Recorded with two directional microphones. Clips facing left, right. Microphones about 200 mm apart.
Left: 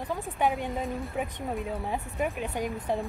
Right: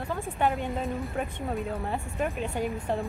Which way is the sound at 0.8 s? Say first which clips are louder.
Right 1 dB; centre (ahead or behind).